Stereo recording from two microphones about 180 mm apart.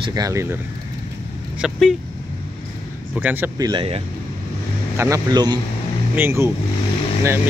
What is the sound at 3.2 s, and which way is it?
Speech, 10° right (ahead or behind).